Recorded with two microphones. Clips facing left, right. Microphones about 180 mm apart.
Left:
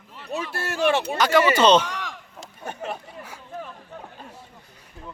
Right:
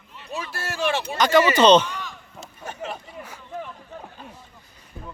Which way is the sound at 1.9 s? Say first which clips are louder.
Left 1 dB; 90° left.